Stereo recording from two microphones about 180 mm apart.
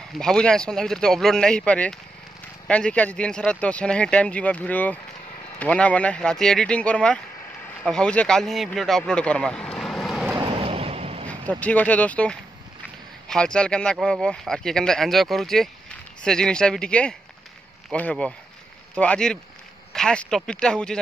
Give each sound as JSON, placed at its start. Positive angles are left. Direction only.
{"t": 0.1, "sound": "speech", "side_deg": 5}
{"t": 10.4, "sound": "a sound", "side_deg": -30}
{"t": 11.2, "sound": "speech", "side_deg": 10}